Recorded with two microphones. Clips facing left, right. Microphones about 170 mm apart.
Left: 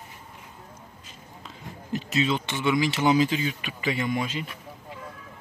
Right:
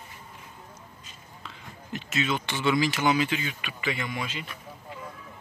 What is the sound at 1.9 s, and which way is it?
Speech, 35° left (ahead or behind).